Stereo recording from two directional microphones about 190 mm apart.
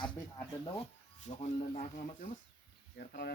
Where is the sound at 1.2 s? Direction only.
35° left (ahead or behind).